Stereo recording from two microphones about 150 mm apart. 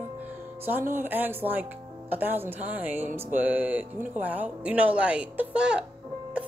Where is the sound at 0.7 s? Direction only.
15° right (ahead or behind).